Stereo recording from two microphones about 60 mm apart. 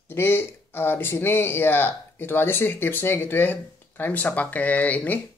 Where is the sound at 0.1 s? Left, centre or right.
Left.